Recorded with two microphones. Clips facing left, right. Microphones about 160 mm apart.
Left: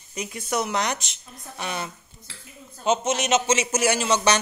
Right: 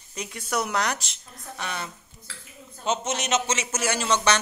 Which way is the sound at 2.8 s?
5° left (ahead or behind).